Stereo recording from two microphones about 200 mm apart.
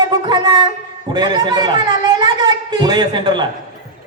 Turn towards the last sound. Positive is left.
turn(degrees=-20)  # may be behind; listen again after turning